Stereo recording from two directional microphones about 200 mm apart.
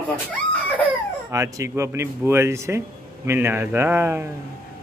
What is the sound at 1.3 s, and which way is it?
Speech, 15° right (ahead or behind).